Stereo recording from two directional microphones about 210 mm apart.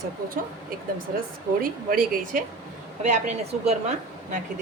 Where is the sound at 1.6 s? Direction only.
45° right (ahead or behind).